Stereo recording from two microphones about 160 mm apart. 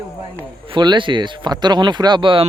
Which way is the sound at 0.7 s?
30° right (ahead or behind).